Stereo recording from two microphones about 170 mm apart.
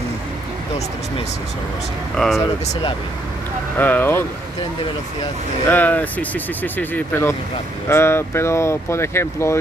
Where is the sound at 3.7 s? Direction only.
10° left (ahead or behind).